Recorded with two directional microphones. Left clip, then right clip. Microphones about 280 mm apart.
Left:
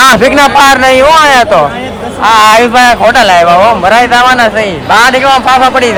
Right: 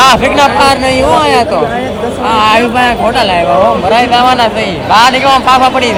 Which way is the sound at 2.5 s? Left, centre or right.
Left.